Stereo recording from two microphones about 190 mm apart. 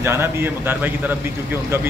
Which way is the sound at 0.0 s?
15° right (ahead or behind).